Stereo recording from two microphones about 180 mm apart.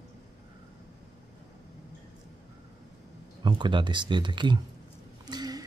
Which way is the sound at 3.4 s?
25° right (ahead or behind).